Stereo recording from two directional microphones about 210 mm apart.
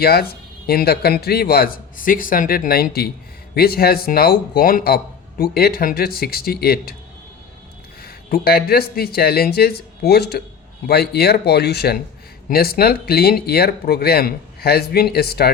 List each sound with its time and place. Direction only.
0.0 s speech: 45° left (ahead or behind)
8.0 s speech: 45° left (ahead or behind)